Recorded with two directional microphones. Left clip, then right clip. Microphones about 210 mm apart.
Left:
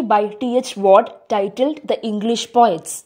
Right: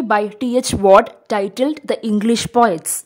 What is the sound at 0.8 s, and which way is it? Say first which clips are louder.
Speech: right 2 dB; 25° right (ahead or behind).